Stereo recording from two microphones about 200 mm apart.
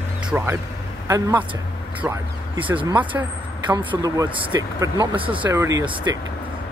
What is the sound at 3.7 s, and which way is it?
Speech, 20° right (ahead or behind).